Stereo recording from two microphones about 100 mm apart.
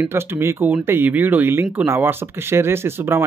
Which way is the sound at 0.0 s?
25° right (ahead or behind).